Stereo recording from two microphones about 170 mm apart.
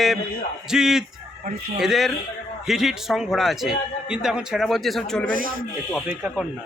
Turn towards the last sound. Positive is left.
turn(degrees=-5)  # may be behind; listen again after turning